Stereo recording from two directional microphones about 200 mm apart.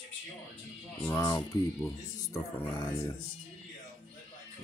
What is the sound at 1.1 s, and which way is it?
Speech, 20° left (ahead or behind).